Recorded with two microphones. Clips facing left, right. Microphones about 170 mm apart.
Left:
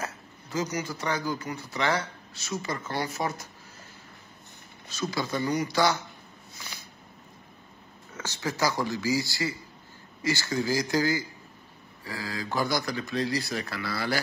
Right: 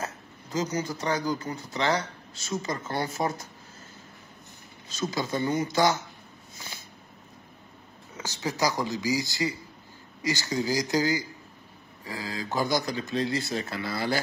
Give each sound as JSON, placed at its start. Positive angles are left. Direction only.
{"t": 0.0, "sound": "speech", "side_deg": -25}
{"t": 5.0, "sound": "speech", "side_deg": -20}
{"t": 8.2, "sound": "speech", "side_deg": -15}